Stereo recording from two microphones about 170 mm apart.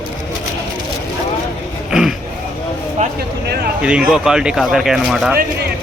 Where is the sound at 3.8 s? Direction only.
5° right (ahead or behind).